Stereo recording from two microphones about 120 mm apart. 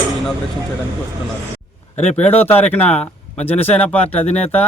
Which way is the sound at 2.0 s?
65° left (ahead or behind).